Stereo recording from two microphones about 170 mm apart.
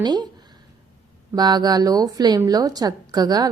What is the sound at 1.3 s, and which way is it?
A woman's voice, 25° right (ahead or behind).